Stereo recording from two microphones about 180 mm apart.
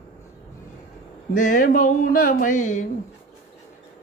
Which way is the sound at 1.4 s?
50° left (ahead or behind).